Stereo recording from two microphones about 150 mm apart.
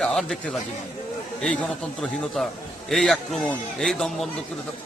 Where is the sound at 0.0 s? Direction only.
5° left (ahead or behind).